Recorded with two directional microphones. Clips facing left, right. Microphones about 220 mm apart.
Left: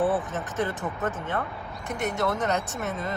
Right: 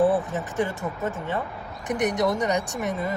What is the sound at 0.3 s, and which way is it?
Speech, 15° right (ahead or behind).